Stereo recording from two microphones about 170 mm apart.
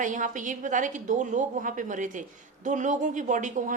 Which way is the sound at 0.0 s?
50° right (ahead or behind).